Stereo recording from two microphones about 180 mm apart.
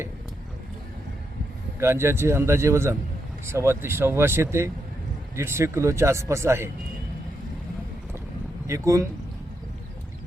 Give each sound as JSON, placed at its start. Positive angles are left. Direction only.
{"t": 1.8, "sound": "speech", "side_deg": -15}
{"t": 8.6, "sound": "speech", "side_deg": -15}